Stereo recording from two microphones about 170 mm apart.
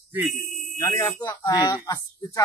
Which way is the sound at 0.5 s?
50° left (ahead or behind).